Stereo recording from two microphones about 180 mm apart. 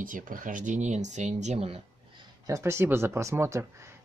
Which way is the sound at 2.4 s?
15° right (ahead or behind).